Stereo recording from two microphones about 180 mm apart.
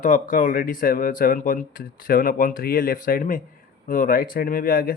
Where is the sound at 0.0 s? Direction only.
50° left (ahead or behind).